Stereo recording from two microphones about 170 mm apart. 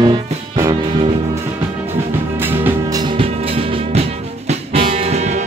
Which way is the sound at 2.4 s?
10° right (ahead or behind).